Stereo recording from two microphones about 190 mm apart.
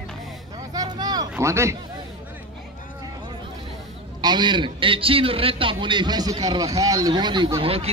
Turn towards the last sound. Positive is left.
turn(degrees=-30)  # may be behind; listen again after turning